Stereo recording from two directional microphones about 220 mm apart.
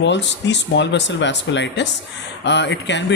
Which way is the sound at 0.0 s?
55° left (ahead or behind).